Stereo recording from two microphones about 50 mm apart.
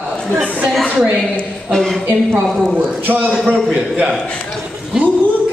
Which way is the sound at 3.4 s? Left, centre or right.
Right.